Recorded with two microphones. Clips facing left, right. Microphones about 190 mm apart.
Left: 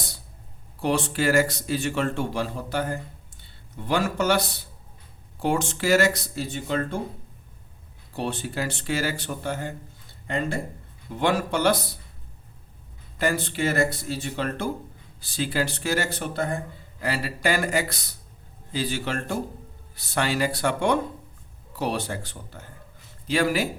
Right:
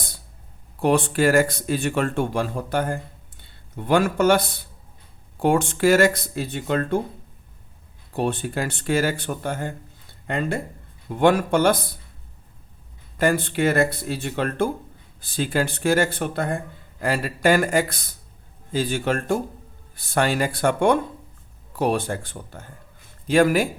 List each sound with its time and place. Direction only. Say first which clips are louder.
0.8 s speech: right 5 dB; 55° right (ahead or behind)
8.1 s speech: right 5 dB; 55° right (ahead or behind)
13.1 s speech: right 5 dB; 55° right (ahead or behind)